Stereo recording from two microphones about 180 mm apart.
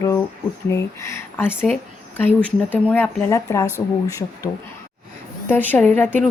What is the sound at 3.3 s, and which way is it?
A woman's voice, 20° left (ahead or behind).